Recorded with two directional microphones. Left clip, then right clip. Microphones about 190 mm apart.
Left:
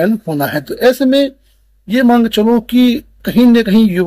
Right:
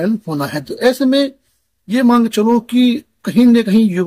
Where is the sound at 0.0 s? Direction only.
10° right (ahead or behind).